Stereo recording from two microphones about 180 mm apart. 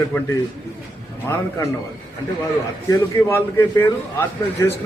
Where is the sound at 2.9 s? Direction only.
15° left (ahead or behind).